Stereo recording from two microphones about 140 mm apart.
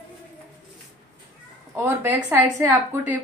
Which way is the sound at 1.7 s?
15° right (ahead or behind).